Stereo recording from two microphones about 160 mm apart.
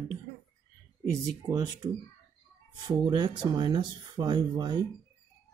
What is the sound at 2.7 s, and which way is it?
Speech, 25° right (ahead or behind).